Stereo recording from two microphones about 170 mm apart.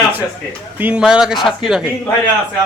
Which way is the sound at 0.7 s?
10° right (ahead or behind).